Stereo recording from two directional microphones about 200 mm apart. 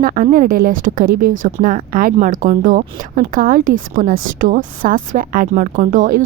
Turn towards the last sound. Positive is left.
turn(degrees=-40)  # may be behind; listen again after turning